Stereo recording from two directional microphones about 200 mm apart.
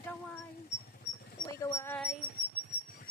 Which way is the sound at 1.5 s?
15° left (ahead or behind).